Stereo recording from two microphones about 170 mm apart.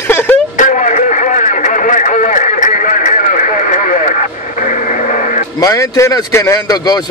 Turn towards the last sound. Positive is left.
turn(degrees=20)  # may be behind; listen again after turning